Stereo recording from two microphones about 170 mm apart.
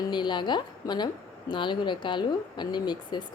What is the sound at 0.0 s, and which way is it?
A woman's voice, 25° left (ahead or behind).